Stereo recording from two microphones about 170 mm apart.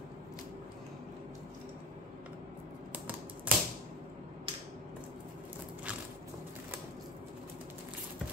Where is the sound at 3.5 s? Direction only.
10° right (ahead or behind).